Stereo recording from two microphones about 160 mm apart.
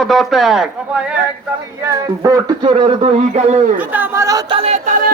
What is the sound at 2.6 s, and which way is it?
Speech, 30° right (ahead or behind).